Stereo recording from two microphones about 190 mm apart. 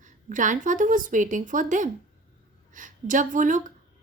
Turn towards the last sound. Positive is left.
turn(degrees=-45)  # may be behind; listen again after turning